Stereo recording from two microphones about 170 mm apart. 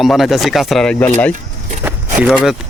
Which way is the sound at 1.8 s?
10° right (ahead or behind).